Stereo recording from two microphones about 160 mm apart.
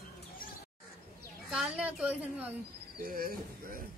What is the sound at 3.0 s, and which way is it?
Speech, 65° right (ahead or behind).